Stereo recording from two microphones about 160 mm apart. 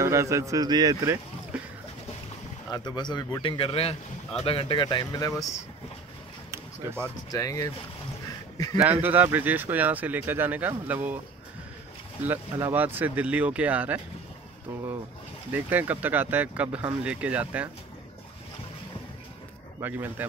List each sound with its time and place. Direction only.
0.0 s speech: 20° right (ahead or behind)
2.7 s speech: 25° left (ahead or behind)
6.5 s basketball bounce: 15° right (ahead or behind)
7.2 s speech: 20° left (ahead or behind)
8.7 s speech: 10° right (ahead or behind)
12.2 s speech: 15° right (ahead or behind)
15.5 s speech: 10° right (ahead or behind)
19.8 s speech: 10° right (ahead or behind)